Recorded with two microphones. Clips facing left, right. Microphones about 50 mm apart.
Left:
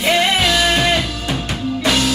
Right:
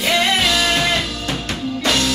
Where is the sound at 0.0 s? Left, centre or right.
Centre.